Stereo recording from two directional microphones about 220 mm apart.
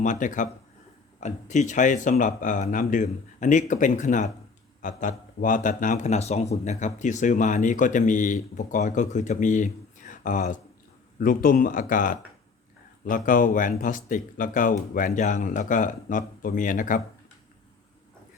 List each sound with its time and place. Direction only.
0.0 s speech: 35° left (ahead or behind)